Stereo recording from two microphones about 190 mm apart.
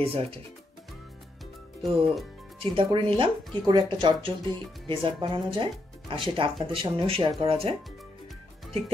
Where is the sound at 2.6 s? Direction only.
25° right (ahead or behind).